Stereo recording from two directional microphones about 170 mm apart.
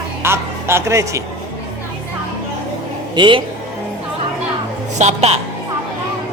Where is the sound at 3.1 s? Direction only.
30° right (ahead or behind).